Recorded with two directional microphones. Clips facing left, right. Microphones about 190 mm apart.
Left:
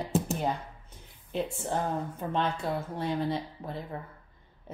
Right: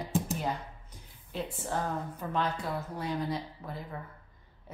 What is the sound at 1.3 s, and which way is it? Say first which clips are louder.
A woman's voice: left 4 dB; 25° left (ahead or behind).